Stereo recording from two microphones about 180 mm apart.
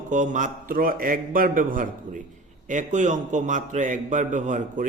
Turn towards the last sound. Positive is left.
turn(degrees=-45)  # may be behind; listen again after turning